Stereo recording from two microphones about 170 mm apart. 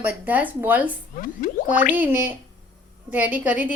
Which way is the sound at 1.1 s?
55° left (ahead or behind).